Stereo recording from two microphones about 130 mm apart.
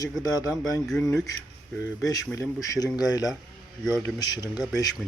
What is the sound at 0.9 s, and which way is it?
Speech, 5° left (ahead or behind).